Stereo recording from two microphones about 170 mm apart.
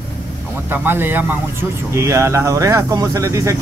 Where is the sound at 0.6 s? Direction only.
10° right (ahead or behind).